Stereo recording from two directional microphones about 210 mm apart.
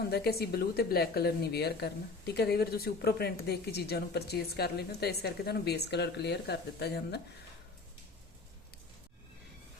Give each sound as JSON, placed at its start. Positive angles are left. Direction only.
{"t": 0.1, "sound": "speech", "side_deg": 50}